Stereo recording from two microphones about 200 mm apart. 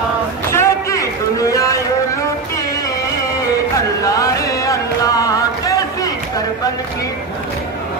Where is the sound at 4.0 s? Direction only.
15° left (ahead or behind).